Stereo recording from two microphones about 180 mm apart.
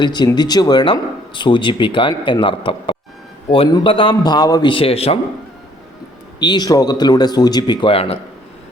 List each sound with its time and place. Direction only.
0.0 s speech: 25° left (ahead or behind)
6.4 s speech: 25° left (ahead or behind)